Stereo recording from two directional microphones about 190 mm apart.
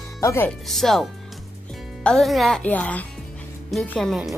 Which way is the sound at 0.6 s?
Centre (ahead or behind).